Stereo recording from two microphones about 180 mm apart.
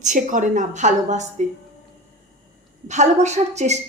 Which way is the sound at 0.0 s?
45° right (ahead or behind).